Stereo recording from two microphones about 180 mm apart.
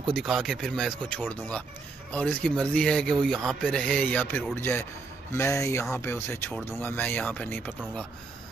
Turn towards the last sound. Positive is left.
turn(degrees=10)  # may be behind; listen again after turning